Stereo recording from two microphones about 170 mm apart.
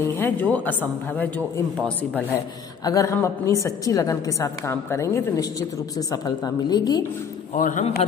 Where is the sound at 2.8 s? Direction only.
20° left (ahead or behind).